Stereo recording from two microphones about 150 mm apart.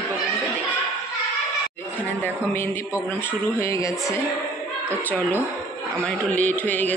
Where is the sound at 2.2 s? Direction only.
15° left (ahead or behind).